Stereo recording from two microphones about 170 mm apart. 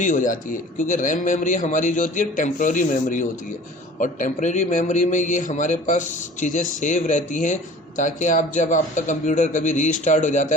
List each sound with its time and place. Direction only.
0.0 s a man's voice: 50° left (ahead or behind)